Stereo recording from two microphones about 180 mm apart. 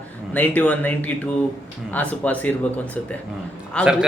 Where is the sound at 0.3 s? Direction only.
10° left (ahead or behind).